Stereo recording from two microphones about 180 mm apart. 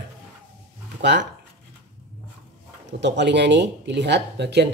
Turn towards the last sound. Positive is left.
turn(degrees=-70)  # may be behind; listen again after turning